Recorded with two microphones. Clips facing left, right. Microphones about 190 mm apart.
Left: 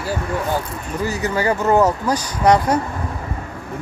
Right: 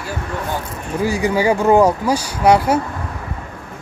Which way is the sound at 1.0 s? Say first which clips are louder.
Right 4 dB; 10° right (ahead or behind).